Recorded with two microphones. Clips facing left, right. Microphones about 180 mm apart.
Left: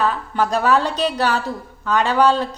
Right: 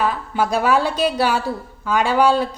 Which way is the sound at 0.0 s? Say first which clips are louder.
Even; 10° right (ahead or behind).